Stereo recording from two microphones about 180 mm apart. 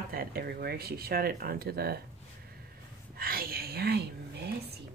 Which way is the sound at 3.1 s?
55° right (ahead or behind).